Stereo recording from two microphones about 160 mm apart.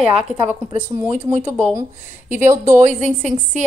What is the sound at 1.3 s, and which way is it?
Speech, 50° right (ahead or behind).